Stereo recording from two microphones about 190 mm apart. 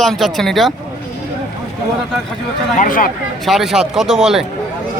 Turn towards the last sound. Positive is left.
turn(degrees=0)  # may be behind; listen again after turning